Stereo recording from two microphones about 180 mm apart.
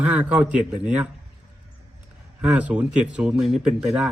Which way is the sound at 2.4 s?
5° right (ahead or behind).